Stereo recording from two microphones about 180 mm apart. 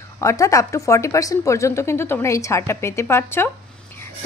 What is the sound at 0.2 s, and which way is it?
Speech, 15° left (ahead or behind).